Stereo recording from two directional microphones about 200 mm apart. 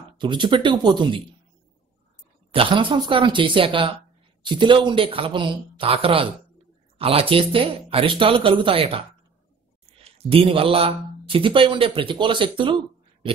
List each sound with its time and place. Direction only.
0.2 s speech: 25° right (ahead or behind)
2.5 s speech: 25° right (ahead or behind)
10.1 s speech: 30° right (ahead or behind)